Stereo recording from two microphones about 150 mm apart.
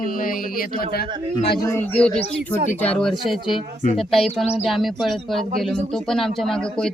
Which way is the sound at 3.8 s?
60° left (ahead or behind).